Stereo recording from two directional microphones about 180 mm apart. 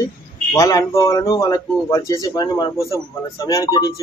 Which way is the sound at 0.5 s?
20° left (ahead or behind).